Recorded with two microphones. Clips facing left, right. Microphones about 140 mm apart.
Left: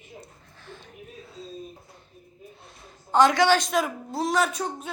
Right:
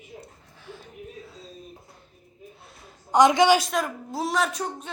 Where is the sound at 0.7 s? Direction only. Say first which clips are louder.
Right 2 dB; 10° right (ahead or behind).